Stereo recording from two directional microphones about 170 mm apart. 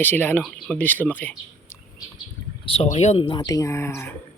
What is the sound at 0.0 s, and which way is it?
Speech, 10° left (ahead or behind).